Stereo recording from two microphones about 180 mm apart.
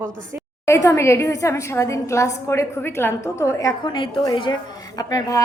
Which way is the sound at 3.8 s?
30° left (ahead or behind).